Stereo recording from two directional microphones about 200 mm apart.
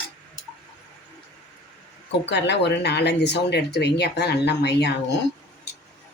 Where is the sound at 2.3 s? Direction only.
60° left (ahead or behind).